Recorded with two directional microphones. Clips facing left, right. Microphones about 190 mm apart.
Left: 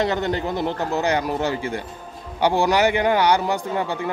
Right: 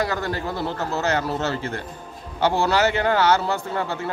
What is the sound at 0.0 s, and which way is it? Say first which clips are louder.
A man's voice: left 3 dB; 20° left (ahead or behind).